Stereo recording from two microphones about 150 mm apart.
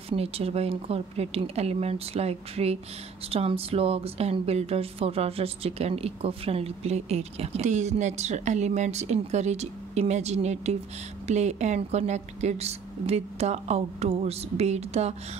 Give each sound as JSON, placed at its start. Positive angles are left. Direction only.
{"t": 0.1, "sound": "a woman's voice", "side_deg": -40}